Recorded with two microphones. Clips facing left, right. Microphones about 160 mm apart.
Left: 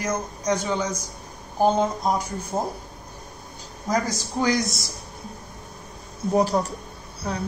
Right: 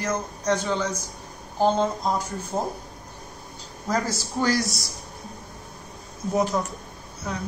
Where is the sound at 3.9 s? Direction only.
15° left (ahead or behind).